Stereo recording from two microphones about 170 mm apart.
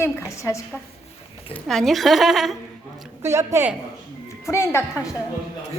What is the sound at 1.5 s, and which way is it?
A woman's voice, centre (ahead or behind).